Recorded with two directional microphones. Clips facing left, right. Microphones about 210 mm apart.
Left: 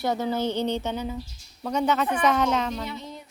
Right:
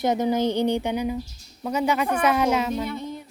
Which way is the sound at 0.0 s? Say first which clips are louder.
Right 4 dB; 20° right (ahead or behind).